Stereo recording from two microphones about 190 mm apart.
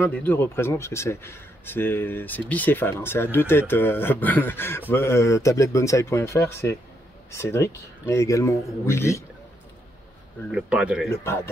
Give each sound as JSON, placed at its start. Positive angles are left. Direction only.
{"t": 0.0, "sound": "speech", "side_deg": 10}
{"t": 10.5, "sound": "speech", "side_deg": -5}
{"t": 11.1, "sound": "speech", "side_deg": 15}